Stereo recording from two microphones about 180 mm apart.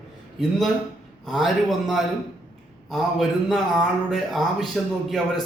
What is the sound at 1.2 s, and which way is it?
Speech, centre (ahead or behind).